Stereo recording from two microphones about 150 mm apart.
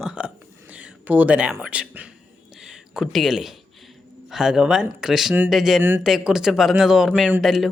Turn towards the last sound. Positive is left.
turn(degrees=0)  # may be behind; listen again after turning